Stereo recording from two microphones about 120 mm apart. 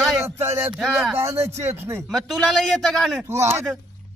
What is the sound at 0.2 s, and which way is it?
Speech, 20° right (ahead or behind).